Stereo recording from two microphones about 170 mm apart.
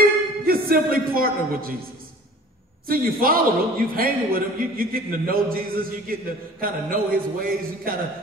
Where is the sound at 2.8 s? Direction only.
60° right (ahead or behind).